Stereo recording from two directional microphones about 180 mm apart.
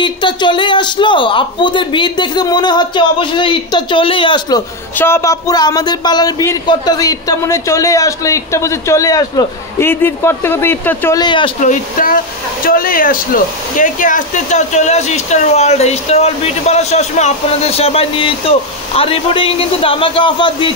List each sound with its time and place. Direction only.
0.0 s speech: 25° left (ahead or behind)
4.9 s speech: 15° left (ahead or behind)
11.1 s speech: 25° left (ahead or behind)
11.6 s speech: 45° left (ahead or behind); by 20.7 s 25° left (ahead or behind)